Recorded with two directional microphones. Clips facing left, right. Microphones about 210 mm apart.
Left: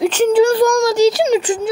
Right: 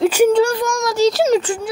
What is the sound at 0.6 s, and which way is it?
Speech, 35° left (ahead or behind).